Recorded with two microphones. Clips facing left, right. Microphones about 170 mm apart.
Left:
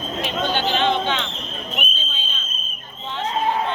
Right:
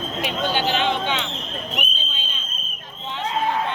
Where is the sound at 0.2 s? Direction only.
10° right (ahead or behind).